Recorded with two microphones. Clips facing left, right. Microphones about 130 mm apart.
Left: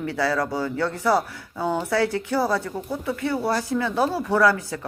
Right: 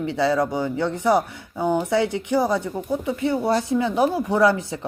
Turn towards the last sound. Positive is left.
turn(degrees=-20)  # may be behind; listen again after turning